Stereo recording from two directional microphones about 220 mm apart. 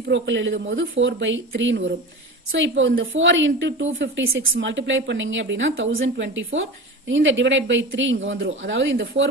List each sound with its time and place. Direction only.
0.1 s a woman's voice: 55° right (ahead or behind)